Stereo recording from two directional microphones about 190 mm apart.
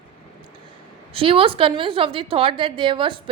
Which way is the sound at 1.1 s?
30° right (ahead or behind).